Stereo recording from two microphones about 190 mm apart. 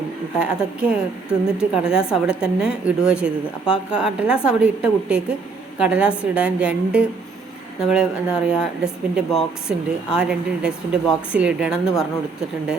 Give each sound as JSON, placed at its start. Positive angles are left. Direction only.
{"t": 0.3, "sound": "a woman's voice", "side_deg": -5}